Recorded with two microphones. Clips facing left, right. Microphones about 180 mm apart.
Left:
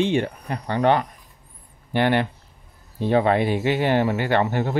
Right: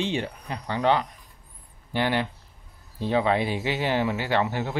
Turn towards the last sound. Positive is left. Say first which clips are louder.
# left 4 dB
turn(degrees=50)  # may be behind; listen again after turning